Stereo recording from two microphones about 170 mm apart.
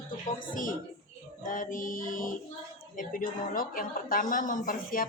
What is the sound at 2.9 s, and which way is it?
A woman's voice, 50° left (ahead or behind).